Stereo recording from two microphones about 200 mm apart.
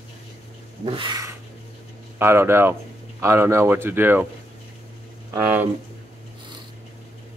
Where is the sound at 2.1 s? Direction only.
10° right (ahead or behind).